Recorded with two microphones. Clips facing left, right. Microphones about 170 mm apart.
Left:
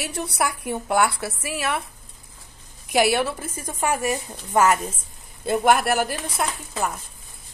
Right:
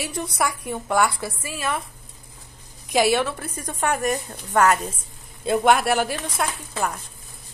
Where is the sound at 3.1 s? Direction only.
10° left (ahead or behind).